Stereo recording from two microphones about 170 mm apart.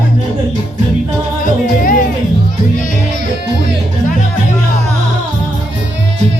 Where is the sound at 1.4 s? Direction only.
50° left (ahead or behind).